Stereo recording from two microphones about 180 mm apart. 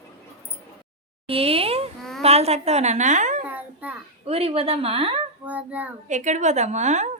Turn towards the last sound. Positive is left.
turn(degrees=-40)  # may be behind; listen again after turning